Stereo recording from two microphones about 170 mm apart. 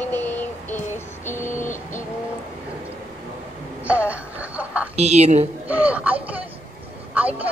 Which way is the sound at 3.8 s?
10° right (ahead or behind).